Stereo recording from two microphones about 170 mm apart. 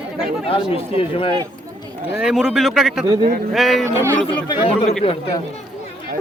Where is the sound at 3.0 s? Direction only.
25° right (ahead or behind).